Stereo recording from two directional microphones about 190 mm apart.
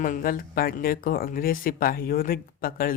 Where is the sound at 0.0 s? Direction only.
50° left (ahead or behind).